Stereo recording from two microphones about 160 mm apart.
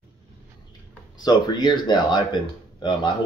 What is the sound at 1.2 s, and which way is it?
Speech, 25° left (ahead or behind).